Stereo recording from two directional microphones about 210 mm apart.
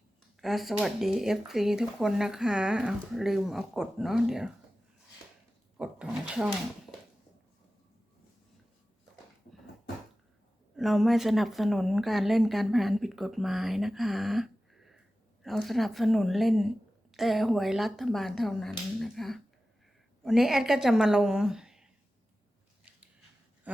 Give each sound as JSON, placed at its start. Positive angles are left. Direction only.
{"t": 0.3, "sound": "speech", "side_deg": 0}
{"t": 5.7, "sound": "speech", "side_deg": -5}
{"t": 10.8, "sound": "speech", "side_deg": 0}
{"t": 22.8, "sound": "a sound", "side_deg": -5}